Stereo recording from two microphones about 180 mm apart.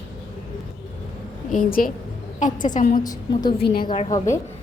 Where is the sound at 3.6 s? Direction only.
60° left (ahead or behind).